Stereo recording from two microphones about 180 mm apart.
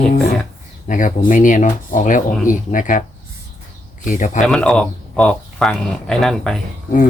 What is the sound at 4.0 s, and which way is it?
Speech, 45° left (ahead or behind).